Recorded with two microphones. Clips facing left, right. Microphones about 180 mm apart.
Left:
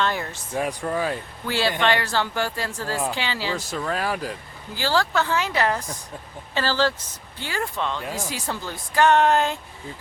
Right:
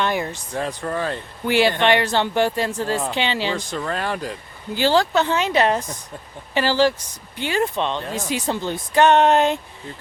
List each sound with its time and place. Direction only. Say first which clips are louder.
0.0 s speech: right 3 dB; 15° right (ahead or behind)
0.5 s speech: left 1 dB; 10° left (ahead or behind)
1.5 s speech: right 5 dB; 15° right (ahead or behind)
3.5 s speech: right 2 dB; 5° left (ahead or behind)
4.7 s speech: right 5 dB; 20° right (ahead or behind)